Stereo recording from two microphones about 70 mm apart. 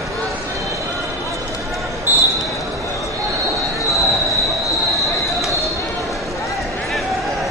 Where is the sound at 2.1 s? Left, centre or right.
Right.